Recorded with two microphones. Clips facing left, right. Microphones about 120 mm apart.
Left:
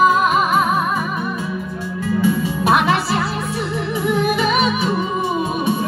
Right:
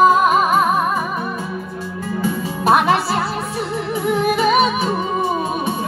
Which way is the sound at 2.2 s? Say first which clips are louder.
Left 4 dB; 40° right (ahead or behind).